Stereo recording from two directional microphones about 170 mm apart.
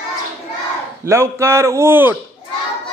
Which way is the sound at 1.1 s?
15° right (ahead or behind).